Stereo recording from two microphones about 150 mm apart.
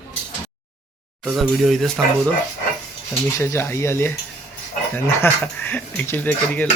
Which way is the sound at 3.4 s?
20° left (ahead or behind).